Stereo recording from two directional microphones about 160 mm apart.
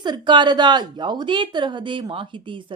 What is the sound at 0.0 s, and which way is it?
A woman's voice, 30° right (ahead or behind).